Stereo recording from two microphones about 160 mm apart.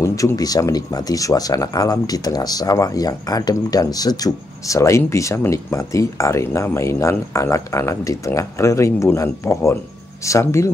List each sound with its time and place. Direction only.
0.0 s speech: 20° left (ahead or behind)